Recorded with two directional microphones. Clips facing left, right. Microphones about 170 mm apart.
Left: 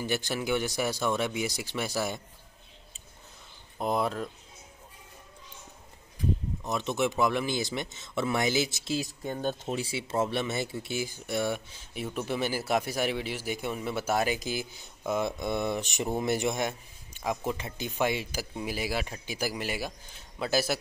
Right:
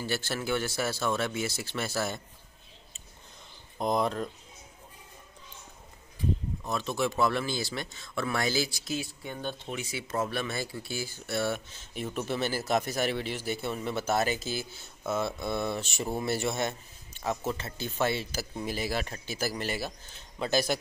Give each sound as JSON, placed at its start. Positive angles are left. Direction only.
{"t": 0.0, "sound": "speech", "side_deg": 15}
{"t": 3.7, "sound": "speech", "side_deg": 5}
{"t": 6.6, "sound": "speech", "side_deg": 20}
{"t": 9.0, "sound": "speech", "side_deg": 40}